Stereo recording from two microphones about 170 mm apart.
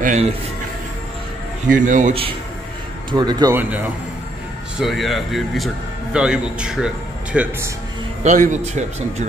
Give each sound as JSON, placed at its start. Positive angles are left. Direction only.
{"t": 0.0, "sound": "a man's voice", "side_deg": -45}
{"t": 1.7, "sound": "speech", "side_deg": -50}
{"t": 3.1, "sound": "speech", "side_deg": -25}
{"t": 3.5, "sound": "a man's voice", "side_deg": -10}
{"t": 8.2, "sound": "speech", "side_deg": -45}